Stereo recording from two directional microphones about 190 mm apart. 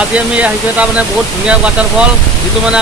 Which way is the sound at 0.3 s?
5° right (ahead or behind).